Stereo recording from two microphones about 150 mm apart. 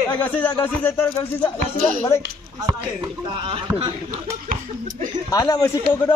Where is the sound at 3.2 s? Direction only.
35° right (ahead or behind).